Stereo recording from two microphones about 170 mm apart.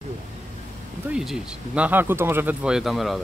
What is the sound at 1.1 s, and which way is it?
Speech, 5° right (ahead or behind).